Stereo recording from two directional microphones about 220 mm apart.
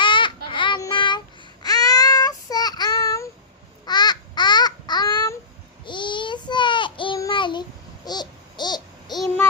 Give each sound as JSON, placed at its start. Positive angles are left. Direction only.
{"t": 0.0, "sound": "child singing", "side_deg": 20}
{"t": 3.8, "sound": "babbling", "side_deg": 20}
{"t": 5.8, "sound": "child singing", "side_deg": 20}
{"t": 8.0, "sound": "a sound", "side_deg": 20}